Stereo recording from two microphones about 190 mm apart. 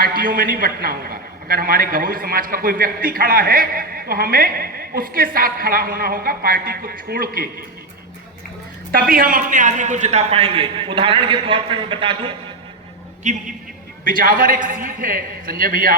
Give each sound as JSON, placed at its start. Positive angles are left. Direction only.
{"t": 0.0, "sound": "a man's voice", "side_deg": -50}
{"t": 8.9, "sound": "a man's voice", "side_deg": -50}
{"t": 13.2, "sound": "a man's voice", "side_deg": -40}